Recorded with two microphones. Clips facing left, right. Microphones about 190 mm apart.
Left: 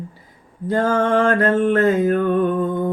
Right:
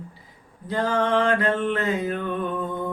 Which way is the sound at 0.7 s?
45° left (ahead or behind).